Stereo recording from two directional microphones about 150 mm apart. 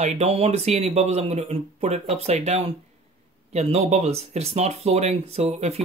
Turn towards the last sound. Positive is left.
turn(degrees=-50)  # may be behind; listen again after turning